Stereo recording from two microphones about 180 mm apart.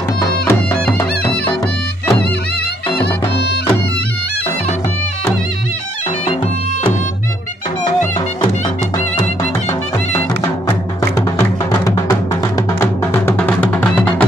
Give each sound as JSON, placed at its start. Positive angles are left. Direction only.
{"t": 0.5, "sound": "music", "side_deg": 10}
{"t": 3.0, "sound": "music", "side_deg": 70}
{"t": 11.0, "sound": "music", "side_deg": 15}